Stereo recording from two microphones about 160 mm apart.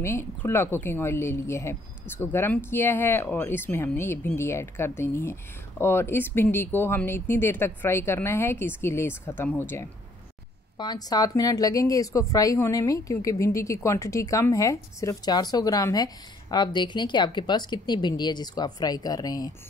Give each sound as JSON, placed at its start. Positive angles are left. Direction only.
{"t": 0.0, "sound": "a woman's voice", "side_deg": 15}
{"t": 10.8, "sound": "a woman's voice", "side_deg": 25}